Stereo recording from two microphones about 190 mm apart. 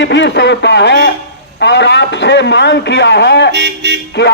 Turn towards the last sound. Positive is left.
turn(degrees=60)  # may be behind; listen again after turning